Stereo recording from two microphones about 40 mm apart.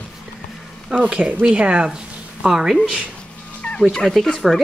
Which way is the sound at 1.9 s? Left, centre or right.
Centre.